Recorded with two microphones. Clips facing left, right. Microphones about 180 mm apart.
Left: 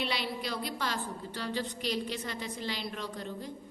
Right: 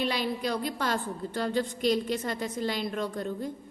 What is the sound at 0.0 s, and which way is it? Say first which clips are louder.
A woman's voice: right 5 dB; 45° right (ahead or behind).